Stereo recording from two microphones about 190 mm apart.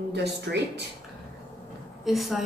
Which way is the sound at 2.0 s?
Centre (ahead or behind).